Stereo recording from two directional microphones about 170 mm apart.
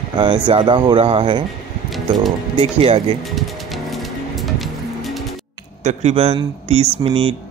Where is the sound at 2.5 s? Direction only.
35° right (ahead or behind).